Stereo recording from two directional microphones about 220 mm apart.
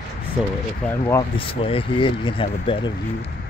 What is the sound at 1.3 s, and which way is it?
Speech, 25° left (ahead or behind).